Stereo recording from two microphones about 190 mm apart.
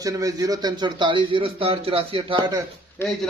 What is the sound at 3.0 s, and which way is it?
Speech, 10° left (ahead or behind).